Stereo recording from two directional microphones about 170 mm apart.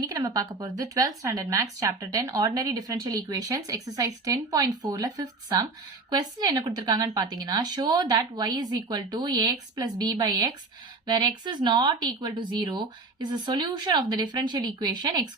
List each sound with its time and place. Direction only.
0.0 s speech: 20° right (ahead or behind)